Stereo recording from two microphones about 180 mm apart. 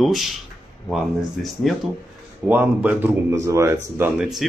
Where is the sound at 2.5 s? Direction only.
10° right (ahead or behind).